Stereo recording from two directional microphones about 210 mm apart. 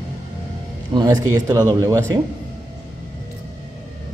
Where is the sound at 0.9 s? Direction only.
20° right (ahead or behind).